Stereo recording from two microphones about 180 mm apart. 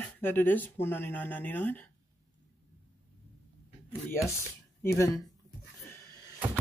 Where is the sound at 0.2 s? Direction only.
10° left (ahead or behind).